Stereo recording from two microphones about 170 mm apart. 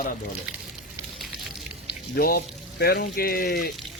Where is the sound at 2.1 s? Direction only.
60° left (ahead or behind).